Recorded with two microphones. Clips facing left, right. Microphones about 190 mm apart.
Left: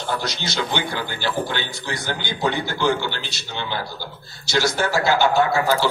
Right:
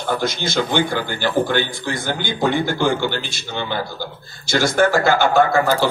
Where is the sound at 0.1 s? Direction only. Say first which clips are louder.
Right 7 dB; 50° right (ahead or behind).